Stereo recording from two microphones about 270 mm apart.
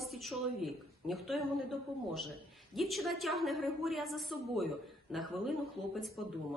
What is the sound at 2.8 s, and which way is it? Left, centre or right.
A woman's voice, centre.